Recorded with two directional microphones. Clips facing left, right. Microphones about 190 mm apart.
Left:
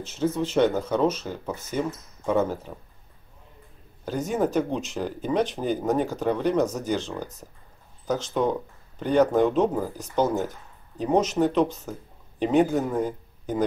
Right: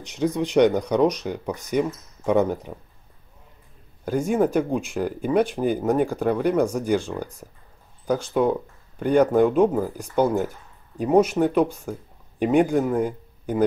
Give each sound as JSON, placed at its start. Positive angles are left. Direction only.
{"t": 0.0, "sound": "speech", "side_deg": -15}
{"t": 4.0, "sound": "speech", "side_deg": -10}